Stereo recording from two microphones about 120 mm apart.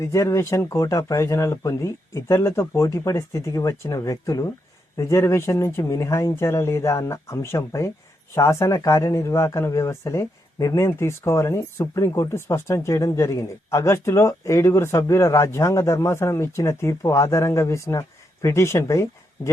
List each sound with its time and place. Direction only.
0.0 s speech: 25° left (ahead or behind)